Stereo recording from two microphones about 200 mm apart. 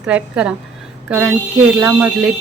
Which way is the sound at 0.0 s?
5° right (ahead or behind).